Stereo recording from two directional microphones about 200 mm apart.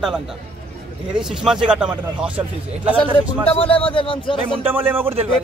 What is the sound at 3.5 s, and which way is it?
Speech, 30° left (ahead or behind).